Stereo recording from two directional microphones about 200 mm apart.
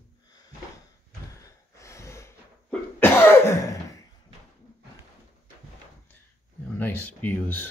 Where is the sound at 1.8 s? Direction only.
15° left (ahead or behind).